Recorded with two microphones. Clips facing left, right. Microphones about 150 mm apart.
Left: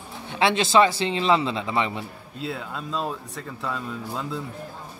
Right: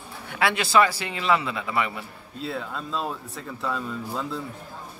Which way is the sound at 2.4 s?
Centre (ahead or behind).